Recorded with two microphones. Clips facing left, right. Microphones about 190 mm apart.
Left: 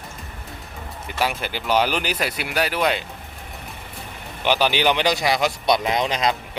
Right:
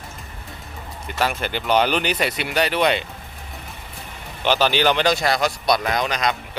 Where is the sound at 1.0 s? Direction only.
5° left (ahead or behind).